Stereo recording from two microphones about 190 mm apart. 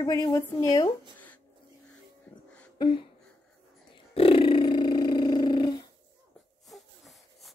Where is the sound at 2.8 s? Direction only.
25° left (ahead or behind).